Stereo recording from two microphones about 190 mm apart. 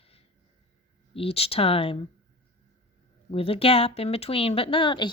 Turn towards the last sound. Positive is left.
turn(degrees=25)  # may be behind; listen again after turning